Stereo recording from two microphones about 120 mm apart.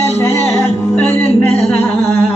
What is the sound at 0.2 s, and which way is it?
Music, 25° left (ahead or behind).